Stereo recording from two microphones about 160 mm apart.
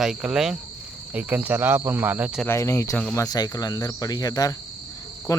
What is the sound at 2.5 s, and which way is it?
Speech, 15° left (ahead or behind).